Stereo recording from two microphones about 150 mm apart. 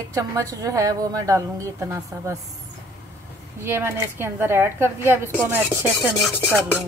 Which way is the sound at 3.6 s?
15° right (ahead or behind).